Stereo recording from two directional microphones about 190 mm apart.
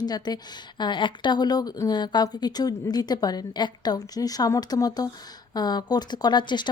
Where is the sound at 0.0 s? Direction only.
20° left (ahead or behind).